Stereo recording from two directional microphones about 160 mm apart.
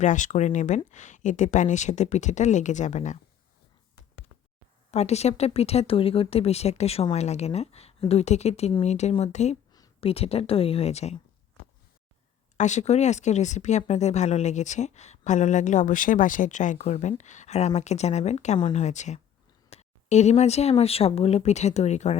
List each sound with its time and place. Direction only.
0.0 s speech: 50° left (ahead or behind)
4.9 s speech: 45° left (ahead or behind)
12.5 s speech: 45° left (ahead or behind)